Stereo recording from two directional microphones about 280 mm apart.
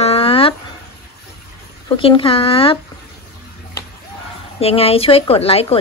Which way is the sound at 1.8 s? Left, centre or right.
Centre.